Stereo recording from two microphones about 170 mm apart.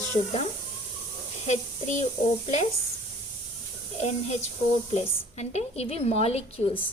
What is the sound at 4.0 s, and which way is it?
A woman's voice, 40° left (ahead or behind).